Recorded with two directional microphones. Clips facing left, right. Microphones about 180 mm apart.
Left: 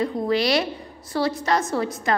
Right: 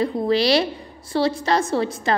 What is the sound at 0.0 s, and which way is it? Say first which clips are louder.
A woman's voice: right 2 dB; 30° right (ahead or behind).